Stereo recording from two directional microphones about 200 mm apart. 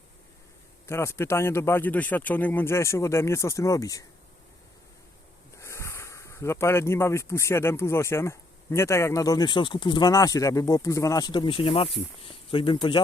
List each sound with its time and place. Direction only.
0.9 s speech: 15° left (ahead or behind)
5.5 s speech: 15° left (ahead or behind)